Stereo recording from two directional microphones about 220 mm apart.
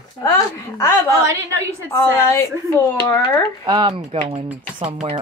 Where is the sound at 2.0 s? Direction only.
10° left (ahead or behind).